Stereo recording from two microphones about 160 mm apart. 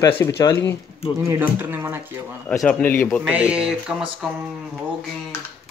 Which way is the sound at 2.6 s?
10° left (ahead or behind).